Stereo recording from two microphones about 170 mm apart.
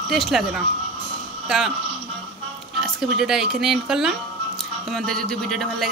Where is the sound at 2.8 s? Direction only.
Centre (ahead or behind).